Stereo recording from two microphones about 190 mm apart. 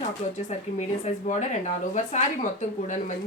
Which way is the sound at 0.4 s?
35° left (ahead or behind).